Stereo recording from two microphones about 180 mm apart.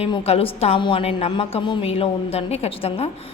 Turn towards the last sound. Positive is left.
turn(degrees=30)  # may be behind; listen again after turning